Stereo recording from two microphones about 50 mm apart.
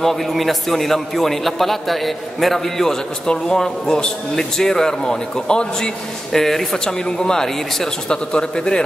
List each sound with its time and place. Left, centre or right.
0.0 s a man's voice: centre
8.1 s a man's voice: centre